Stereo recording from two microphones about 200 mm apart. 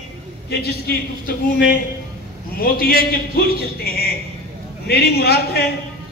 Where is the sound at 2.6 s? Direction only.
50° left (ahead or behind).